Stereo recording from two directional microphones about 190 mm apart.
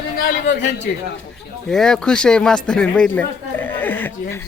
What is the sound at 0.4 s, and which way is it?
Speech, 65° left (ahead or behind).